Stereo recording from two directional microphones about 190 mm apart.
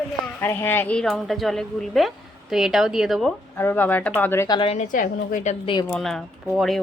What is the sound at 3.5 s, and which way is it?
Speech, 10° left (ahead or behind).